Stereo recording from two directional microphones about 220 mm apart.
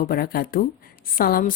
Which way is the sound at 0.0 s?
40° left (ahead or behind).